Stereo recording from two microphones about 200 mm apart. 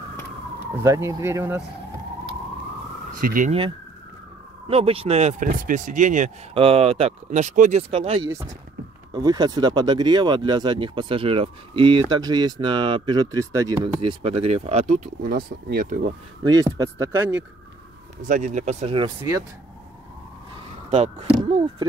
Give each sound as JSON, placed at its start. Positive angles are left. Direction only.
{"t": 0.8, "sound": "speech", "side_deg": -15}
{"t": 3.2, "sound": "speech", "side_deg": -45}
{"t": 4.6, "sound": "speech", "side_deg": -30}
{"t": 9.1, "sound": "speech", "side_deg": -20}
{"t": 15.2, "sound": "speech", "side_deg": -45}
{"t": 16.4, "sound": "speech", "side_deg": -15}
{"t": 18.2, "sound": "speech", "side_deg": -40}
{"t": 20.9, "sound": "speech", "side_deg": -35}